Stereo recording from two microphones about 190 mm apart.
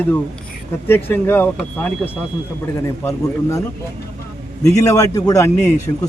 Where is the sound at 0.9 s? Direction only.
10° left (ahead or behind).